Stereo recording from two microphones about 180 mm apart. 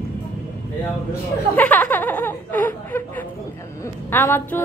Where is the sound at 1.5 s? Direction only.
10° left (ahead or behind).